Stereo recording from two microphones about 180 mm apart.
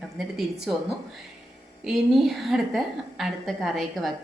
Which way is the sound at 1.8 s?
Centre (ahead or behind).